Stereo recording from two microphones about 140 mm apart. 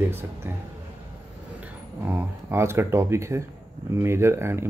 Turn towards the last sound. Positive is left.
turn(degrees=-15)  # may be behind; listen again after turning